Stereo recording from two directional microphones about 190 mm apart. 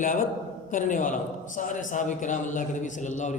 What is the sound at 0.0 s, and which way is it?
A man's voice, 45° left (ahead or behind).